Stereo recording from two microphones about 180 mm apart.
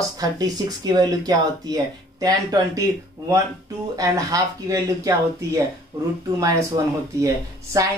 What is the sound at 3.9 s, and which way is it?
Speech, 20° right (ahead or behind).